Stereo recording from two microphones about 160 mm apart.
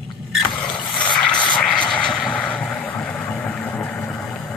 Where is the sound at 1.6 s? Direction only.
5° left (ahead or behind).